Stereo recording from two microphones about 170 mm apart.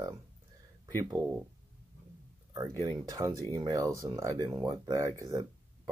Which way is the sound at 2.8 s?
20° right (ahead or behind).